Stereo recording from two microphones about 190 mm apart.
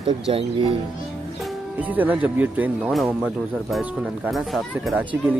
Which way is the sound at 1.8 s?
10° right (ahead or behind).